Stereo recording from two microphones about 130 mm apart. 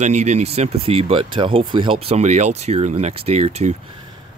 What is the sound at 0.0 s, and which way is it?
Speech, 60° right (ahead or behind).